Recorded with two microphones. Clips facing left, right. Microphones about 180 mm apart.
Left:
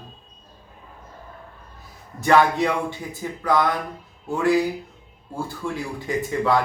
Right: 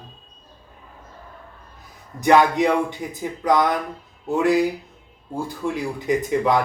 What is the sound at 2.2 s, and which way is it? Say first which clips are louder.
Speech: right 2 dB; 15° right (ahead or behind).